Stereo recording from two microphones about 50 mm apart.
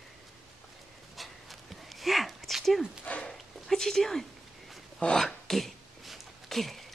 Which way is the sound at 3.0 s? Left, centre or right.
Left.